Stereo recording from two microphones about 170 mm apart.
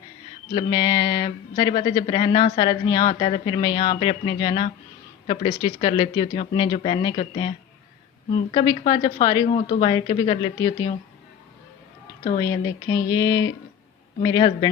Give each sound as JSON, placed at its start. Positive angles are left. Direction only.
{"t": 0.5, "sound": "a woman's voice", "side_deg": 25}
{"t": 9.6, "sound": "speech", "side_deg": 45}
{"t": 9.8, "sound": "a woman's voice", "side_deg": 30}
{"t": 12.4, "sound": "a woman's voice", "side_deg": 25}